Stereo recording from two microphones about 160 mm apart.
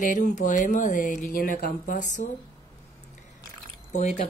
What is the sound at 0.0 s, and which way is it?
Speech, 50° left (ahead or behind).